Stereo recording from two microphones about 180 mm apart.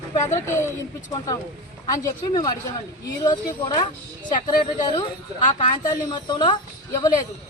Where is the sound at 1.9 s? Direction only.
20° left (ahead or behind).